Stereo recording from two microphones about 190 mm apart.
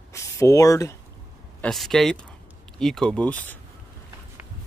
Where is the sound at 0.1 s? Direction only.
15° left (ahead or behind).